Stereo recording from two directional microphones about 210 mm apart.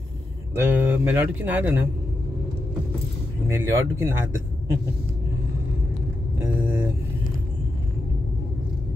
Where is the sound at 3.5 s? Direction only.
10° right (ahead or behind).